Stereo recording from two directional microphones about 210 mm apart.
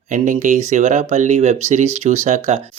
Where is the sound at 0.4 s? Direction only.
35° right (ahead or behind).